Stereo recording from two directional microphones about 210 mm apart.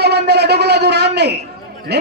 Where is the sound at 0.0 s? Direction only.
50° right (ahead or behind).